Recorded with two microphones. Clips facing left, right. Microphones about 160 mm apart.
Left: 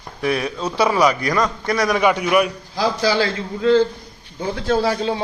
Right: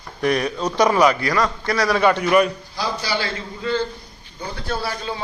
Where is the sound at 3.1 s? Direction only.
90° left.